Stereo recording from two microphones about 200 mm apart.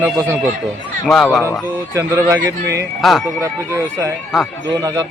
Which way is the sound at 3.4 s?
15° right (ahead or behind).